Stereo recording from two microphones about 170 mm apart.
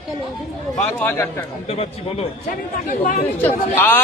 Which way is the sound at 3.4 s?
10° left (ahead or behind).